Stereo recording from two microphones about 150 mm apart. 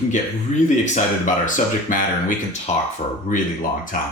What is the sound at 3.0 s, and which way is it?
Speech, 50° left (ahead or behind).